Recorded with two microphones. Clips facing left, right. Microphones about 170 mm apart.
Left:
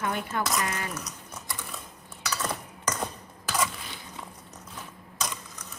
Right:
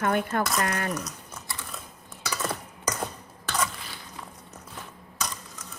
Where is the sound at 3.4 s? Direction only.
5° left (ahead or behind).